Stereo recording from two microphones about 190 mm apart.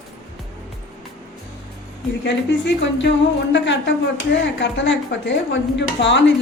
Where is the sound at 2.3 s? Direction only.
70° left (ahead or behind).